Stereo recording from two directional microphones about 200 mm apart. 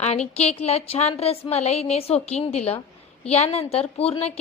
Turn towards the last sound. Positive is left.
turn(degrees=30)  # may be behind; listen again after turning